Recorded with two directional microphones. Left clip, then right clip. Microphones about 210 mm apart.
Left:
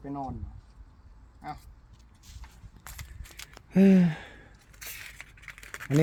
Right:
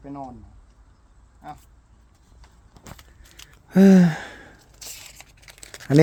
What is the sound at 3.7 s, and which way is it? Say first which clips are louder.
Gasp: right 7 dB; 25° right (ahead or behind).